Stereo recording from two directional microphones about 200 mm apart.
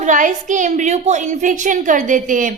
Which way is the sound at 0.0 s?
40° right (ahead or behind).